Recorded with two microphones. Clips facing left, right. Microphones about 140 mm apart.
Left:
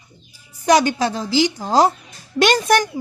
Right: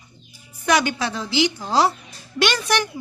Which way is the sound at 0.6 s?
40° left (ahead or behind).